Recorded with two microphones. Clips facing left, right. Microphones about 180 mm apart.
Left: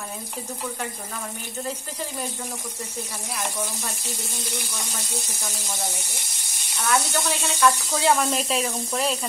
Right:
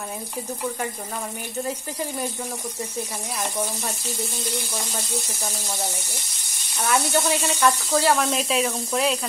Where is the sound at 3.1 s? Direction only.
15° right (ahead or behind).